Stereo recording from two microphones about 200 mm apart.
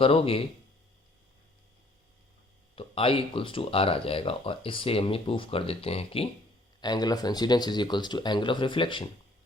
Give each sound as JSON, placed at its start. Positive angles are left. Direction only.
{"t": 0.0, "sound": "speech", "side_deg": 25}
{"t": 2.7, "sound": "speech", "side_deg": 25}